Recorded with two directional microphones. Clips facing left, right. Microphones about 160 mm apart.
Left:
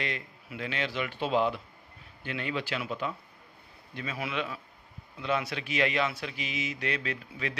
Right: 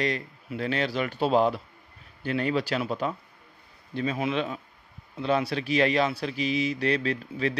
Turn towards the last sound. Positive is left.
turn(degrees=-35)  # may be behind; listen again after turning